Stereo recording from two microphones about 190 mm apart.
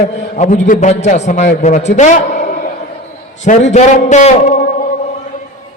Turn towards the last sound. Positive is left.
turn(degrees=40)  # may be behind; listen again after turning